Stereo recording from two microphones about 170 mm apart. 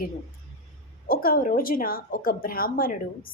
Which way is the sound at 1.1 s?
55° left (ahead or behind).